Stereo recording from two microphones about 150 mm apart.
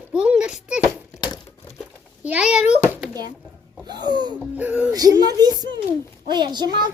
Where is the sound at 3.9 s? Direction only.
30° right (ahead or behind).